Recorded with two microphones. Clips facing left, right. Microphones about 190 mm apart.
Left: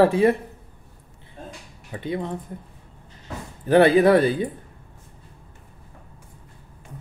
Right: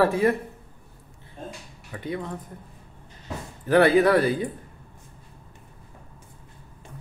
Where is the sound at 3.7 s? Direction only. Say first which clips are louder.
Left 3 dB; 25° left (ahead or behind).